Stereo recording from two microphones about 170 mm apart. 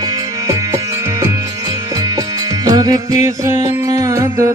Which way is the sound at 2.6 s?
20° right (ahead or behind).